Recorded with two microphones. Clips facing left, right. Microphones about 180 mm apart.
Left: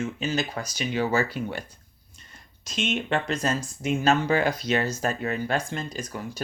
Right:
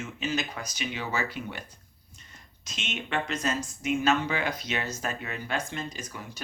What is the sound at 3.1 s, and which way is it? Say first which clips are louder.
Speech: even; 35° left (ahead or behind).